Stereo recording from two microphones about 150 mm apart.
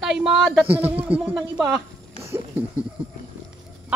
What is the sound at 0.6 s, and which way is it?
Speech, 15° right (ahead or behind).